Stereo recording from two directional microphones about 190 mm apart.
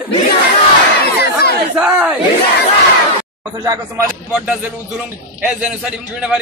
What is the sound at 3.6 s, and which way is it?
Speech, 15° right (ahead or behind).